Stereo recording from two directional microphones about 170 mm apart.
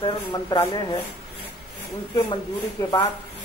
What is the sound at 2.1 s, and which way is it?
Speech, 25° left (ahead or behind).